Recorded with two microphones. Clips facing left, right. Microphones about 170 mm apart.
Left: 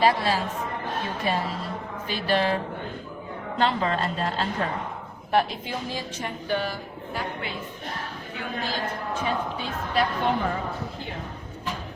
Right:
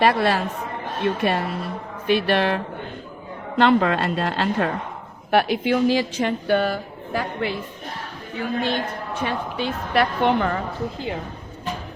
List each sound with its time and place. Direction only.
0.0 s speech: 65° right (ahead or behind)
3.6 s a woman's voice: 65° right (ahead or behind)
9.2 s a woman's voice: 70° right (ahead or behind)